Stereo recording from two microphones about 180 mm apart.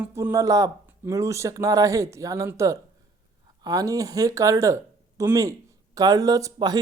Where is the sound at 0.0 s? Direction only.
15° right (ahead or behind).